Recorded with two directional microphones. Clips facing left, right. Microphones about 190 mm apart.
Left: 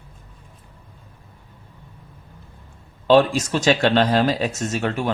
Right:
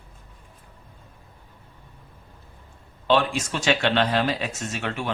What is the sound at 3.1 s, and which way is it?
Speech, 40° left (ahead or behind).